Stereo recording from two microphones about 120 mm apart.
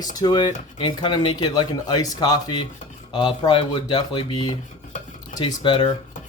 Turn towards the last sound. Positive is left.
turn(degrees=40)  # may be behind; listen again after turning